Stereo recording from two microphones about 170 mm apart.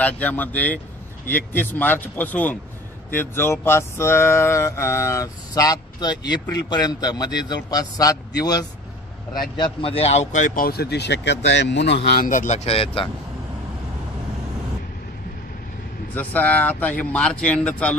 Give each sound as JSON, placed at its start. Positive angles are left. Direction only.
{"t": 0.0, "sound": "a man's voice", "side_deg": 10}
{"t": 16.2, "sound": "speech", "side_deg": 10}